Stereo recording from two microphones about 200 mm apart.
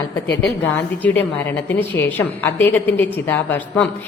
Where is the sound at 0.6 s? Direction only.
10° left (ahead or behind).